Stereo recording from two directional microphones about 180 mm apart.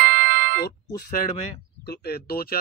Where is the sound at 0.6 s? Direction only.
60° left (ahead or behind).